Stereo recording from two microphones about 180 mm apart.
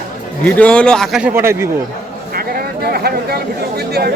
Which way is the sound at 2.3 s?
55° right (ahead or behind).